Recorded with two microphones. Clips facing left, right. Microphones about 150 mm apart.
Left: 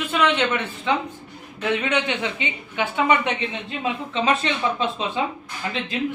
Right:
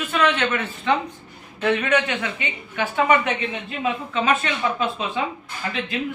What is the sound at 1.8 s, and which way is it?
A woman's voice, 20° left (ahead or behind).